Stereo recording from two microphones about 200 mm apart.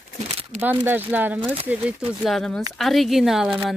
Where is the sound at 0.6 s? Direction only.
10° right (ahead or behind).